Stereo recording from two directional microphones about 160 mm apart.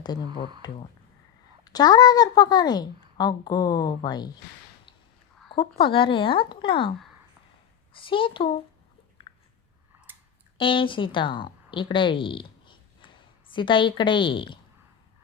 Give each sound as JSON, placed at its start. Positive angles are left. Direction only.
{"t": 0.0, "sound": "a woman's voice", "side_deg": 25}
{"t": 5.9, "sound": "a woman's voice", "side_deg": 35}
{"t": 7.9, "sound": "a woman's voice", "side_deg": 35}
{"t": 9.3, "sound": "biting", "side_deg": 35}
{"t": 10.6, "sound": "a woman's voice", "side_deg": 30}